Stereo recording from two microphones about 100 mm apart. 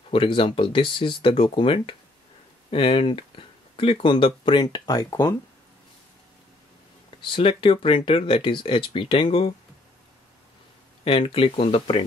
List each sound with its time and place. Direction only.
0.1 s speech: 60° left (ahead or behind); by 5.3 s 40° left (ahead or behind)
7.2 s speech: 60° left (ahead or behind)
9.1 s speech: 70° left (ahead or behind)
11.1 s speech: 60° left (ahead or behind)